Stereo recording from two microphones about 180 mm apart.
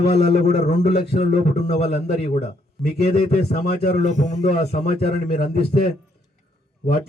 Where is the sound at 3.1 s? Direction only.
35° left (ahead or behind).